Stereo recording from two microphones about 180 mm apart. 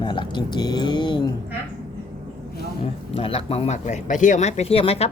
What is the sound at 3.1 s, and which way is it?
Speech, 30° left (ahead or behind).